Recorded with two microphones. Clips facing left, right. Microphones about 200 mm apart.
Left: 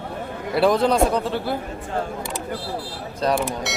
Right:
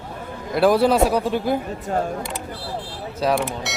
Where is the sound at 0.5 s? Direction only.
5° right (ahead or behind).